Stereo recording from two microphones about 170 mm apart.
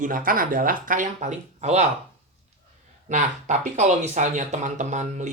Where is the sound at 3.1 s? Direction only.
45° right (ahead or behind).